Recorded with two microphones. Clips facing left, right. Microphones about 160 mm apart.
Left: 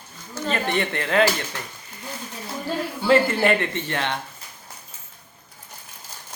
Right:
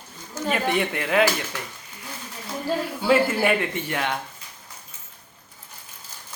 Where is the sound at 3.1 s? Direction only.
5° right (ahead or behind).